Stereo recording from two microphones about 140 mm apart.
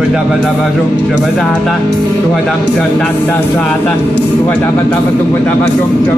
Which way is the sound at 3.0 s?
15° left (ahead or behind).